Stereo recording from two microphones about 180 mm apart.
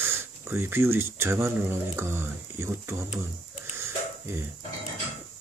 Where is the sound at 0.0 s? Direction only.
15° right (ahead or behind).